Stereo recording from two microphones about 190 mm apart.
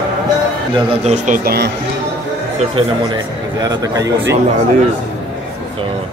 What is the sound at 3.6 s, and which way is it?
Speech, 20° right (ahead or behind).